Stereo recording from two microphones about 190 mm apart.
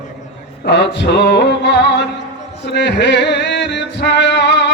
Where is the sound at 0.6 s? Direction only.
65° left (ahead or behind).